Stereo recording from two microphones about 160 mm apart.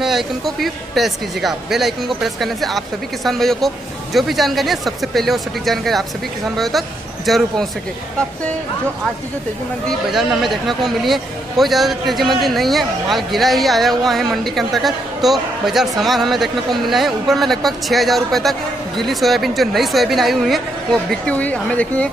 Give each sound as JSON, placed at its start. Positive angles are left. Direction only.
{"t": 0.0, "sound": "speech", "side_deg": 0}
{"t": 9.8, "sound": "speech", "side_deg": 0}